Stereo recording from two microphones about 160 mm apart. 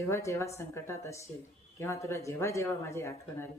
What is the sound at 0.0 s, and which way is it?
Speech, 20° left (ahead or behind).